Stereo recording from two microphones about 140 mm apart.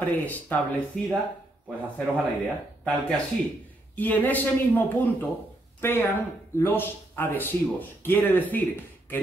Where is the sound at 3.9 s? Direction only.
10° left (ahead or behind).